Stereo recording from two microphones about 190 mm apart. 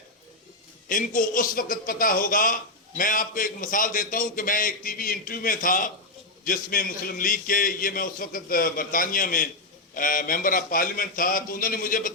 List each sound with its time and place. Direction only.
0.9 s a man's voice: 45° left (ahead or behind)